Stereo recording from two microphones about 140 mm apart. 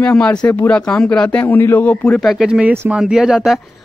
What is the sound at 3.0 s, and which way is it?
Speech, 5° right (ahead or behind).